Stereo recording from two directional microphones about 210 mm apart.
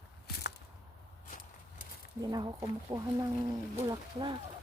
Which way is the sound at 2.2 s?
20° right (ahead or behind).